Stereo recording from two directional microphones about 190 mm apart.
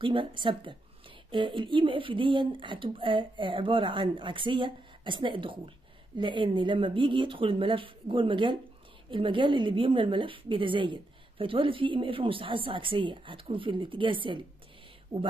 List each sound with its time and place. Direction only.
0.0 s a woman's voice: 25° right (ahead or behind)
15.1 s speech: 15° right (ahead or behind)